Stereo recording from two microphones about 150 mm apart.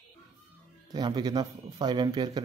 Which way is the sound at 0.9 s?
30° right (ahead or behind).